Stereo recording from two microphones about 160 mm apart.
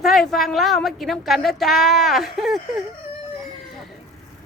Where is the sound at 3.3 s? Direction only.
Centre (ahead or behind).